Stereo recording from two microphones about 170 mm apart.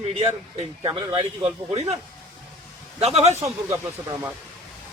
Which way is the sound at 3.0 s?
40° right (ahead or behind).